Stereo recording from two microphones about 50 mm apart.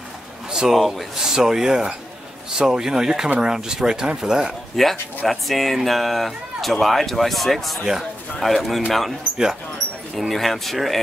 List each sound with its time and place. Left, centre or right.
0.5 s a sound: centre
0.7 s speech: centre
1.2 s speech: centre
4.7 s speech: centre
10.1 s speech: centre